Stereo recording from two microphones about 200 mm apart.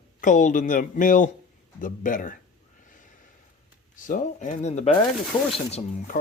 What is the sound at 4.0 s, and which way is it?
Speech, 40° left (ahead or behind).